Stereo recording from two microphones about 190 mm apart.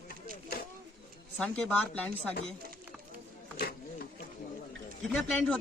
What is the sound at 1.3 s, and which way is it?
Speech, 5° left (ahead or behind).